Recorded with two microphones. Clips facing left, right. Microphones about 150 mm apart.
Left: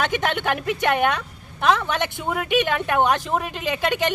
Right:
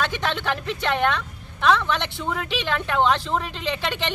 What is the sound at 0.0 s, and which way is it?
Speech, 55° left (ahead or behind).